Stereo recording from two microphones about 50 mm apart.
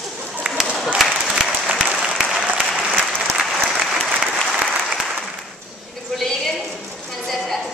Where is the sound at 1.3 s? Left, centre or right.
Centre.